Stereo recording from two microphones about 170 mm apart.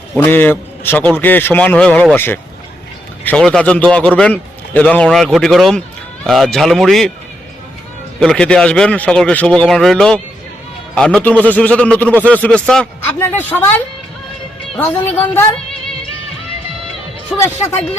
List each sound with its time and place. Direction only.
0.2 s a man's voice: 10° left (ahead or behind)
8.2 s a man's voice: 5° left (ahead or behind)